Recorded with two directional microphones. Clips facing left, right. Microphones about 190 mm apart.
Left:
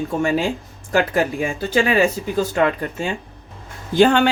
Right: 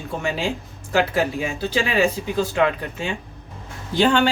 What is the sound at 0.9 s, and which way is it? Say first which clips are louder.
Speech: left 2 dB; 50° left (ahead or behind).